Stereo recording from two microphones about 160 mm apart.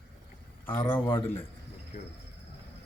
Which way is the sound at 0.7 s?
15° left (ahead or behind).